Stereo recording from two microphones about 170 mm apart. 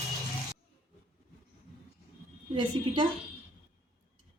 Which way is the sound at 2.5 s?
25° right (ahead or behind).